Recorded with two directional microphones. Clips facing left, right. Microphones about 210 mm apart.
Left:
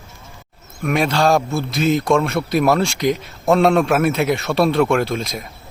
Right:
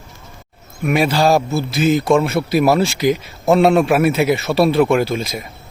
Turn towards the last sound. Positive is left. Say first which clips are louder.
# right 2 dB
turn(degrees=0)  # may be behind; listen again after turning